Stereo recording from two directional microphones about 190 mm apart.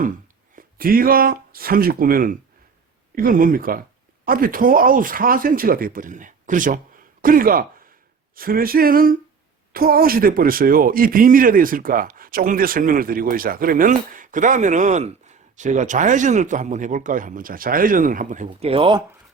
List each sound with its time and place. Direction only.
0.5 s a man's voice: 50° right (ahead or behind); by 19.0 s 25° right (ahead or behind)